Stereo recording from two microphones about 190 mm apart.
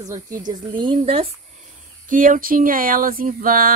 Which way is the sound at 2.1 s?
45° right (ahead or behind).